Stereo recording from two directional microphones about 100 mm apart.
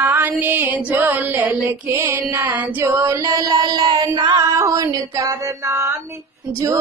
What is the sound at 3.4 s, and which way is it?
Mantra, 45° right (ahead or behind).